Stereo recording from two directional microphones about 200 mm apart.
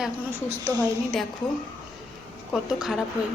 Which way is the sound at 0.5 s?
15° right (ahead or behind).